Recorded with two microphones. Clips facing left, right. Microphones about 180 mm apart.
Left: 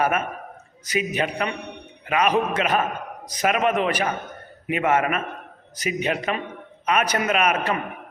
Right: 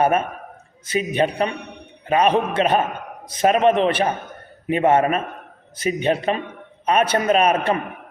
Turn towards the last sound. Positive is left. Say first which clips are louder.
# right 5 dB
turn(degrees=-30)  # may be behind; listen again after turning